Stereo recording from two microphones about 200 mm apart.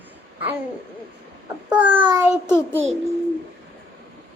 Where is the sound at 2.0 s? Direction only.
20° right (ahead or behind).